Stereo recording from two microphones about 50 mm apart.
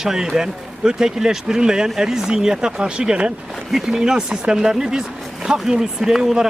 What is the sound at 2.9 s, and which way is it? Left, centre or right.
Speech, right.